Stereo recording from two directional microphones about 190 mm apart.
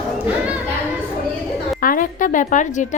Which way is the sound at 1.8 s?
45° left (ahead or behind).